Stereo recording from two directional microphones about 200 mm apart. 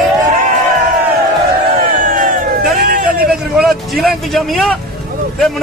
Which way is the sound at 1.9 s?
40° right (ahead or behind).